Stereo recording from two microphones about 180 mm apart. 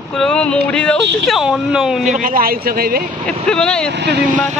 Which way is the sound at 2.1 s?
50° right (ahead or behind).